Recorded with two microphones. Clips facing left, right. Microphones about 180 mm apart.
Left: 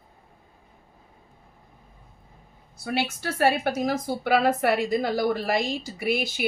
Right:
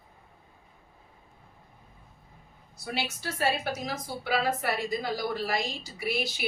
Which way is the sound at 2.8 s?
55° left (ahead or behind).